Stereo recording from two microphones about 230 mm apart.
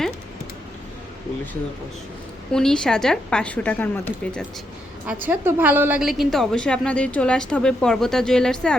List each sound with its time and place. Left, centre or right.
2.5 s a woman's voice: centre
5.3 s a woman's voice: centre